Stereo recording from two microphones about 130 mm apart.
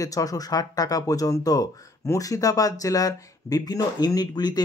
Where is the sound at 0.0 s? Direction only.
25° left (ahead or behind).